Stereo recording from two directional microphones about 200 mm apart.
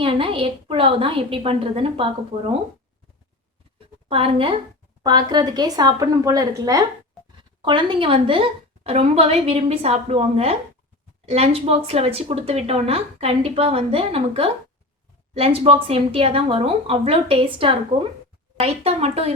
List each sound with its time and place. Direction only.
0.0 s a woman's voice: 25° right (ahead or behind)
4.1 s a woman's voice: 25° right (ahead or behind)